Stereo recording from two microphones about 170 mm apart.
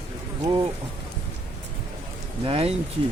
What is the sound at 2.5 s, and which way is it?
Speech, 35° right (ahead or behind).